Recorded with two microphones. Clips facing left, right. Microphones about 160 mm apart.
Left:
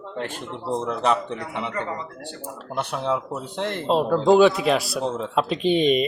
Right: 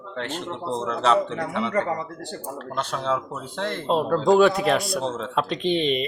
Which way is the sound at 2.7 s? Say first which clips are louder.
Left 1 dB; 15° left (ahead or behind).